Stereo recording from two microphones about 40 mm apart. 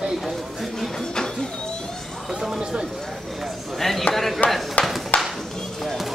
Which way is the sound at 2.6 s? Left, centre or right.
Right.